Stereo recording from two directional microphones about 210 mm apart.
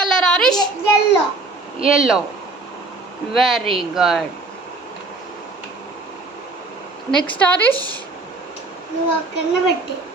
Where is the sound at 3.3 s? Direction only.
Centre (ahead or behind).